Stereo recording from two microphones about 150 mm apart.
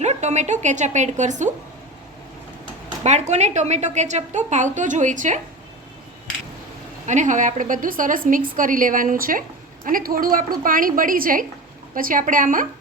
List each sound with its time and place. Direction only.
0.0 s a woman's voice: 50° right (ahead or behind)
3.0 s a woman's voice: 50° right (ahead or behind)
7.1 s a woman's voice: 55° right (ahead or behind)